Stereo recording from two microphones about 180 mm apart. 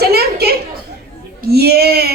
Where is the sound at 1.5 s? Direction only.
60° right (ahead or behind).